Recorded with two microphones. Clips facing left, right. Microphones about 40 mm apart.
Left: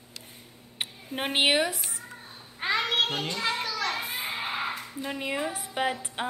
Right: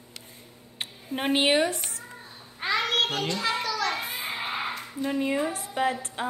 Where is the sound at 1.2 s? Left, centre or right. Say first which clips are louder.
Right 1 dB; left.